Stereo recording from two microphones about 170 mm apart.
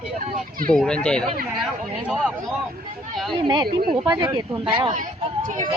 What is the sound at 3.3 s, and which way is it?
Speech, 25° right (ahead or behind).